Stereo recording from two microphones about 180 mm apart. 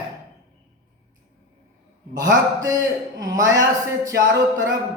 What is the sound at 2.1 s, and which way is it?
A man's voice, 20° right (ahead or behind).